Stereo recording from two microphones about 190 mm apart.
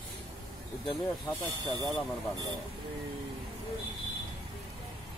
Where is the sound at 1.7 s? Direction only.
20° right (ahead or behind).